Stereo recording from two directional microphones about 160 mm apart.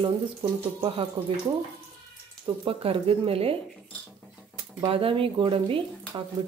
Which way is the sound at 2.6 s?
35° right (ahead or behind).